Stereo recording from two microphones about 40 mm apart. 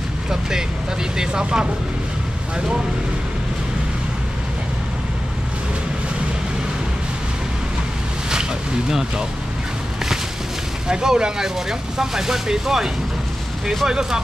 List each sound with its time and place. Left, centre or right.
0.3 s speech: centre
8.3 s a sound: centre
10.9 s speech: centre